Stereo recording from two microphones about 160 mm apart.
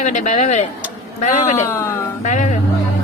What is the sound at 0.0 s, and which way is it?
A man's voice, 50° left (ahead or behind).